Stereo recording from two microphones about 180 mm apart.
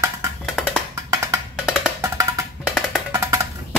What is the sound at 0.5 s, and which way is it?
Music, centre (ahead or behind).